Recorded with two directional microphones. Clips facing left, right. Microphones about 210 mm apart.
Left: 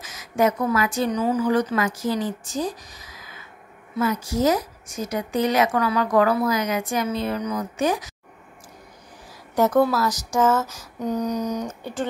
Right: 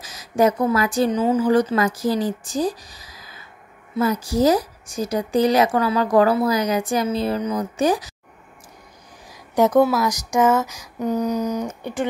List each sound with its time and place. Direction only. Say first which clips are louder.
0.0 s a woman's voice: right 3 dB; 35° right (ahead or behind)
9.6 s speech: right 3 dB; 15° right (ahead or behind)